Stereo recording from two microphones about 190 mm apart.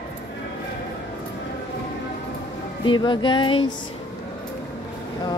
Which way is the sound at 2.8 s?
25° left (ahead or behind).